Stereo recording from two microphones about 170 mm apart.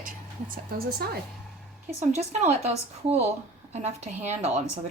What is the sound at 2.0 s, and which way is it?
Speech, 40° right (ahead or behind).